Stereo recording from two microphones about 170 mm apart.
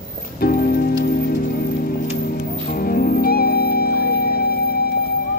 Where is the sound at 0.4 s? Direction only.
60° left (ahead or behind).